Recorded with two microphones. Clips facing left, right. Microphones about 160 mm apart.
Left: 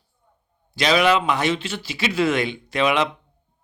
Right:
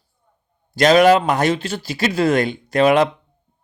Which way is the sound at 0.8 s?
45° right (ahead or behind).